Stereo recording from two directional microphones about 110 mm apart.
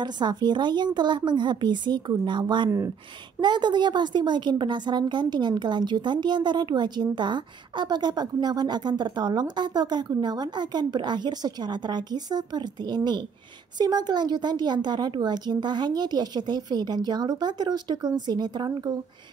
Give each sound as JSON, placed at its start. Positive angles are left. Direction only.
{"t": 0.0, "sound": "a woman's voice", "side_deg": -40}